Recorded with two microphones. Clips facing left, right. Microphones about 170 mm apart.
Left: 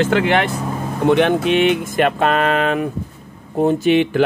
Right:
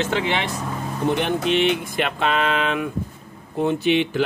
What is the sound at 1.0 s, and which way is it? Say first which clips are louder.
Speech: left 7 dB; 70° left (ahead or behind).